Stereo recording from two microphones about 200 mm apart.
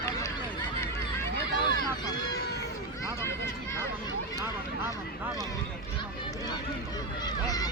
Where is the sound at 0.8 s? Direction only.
10° left (ahead or behind).